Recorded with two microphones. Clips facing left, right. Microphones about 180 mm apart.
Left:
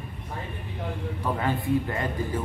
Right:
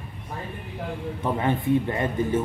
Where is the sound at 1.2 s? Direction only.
20° right (ahead or behind).